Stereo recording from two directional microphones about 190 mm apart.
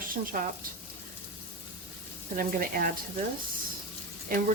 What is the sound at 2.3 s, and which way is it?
Speech, 50° right (ahead or behind).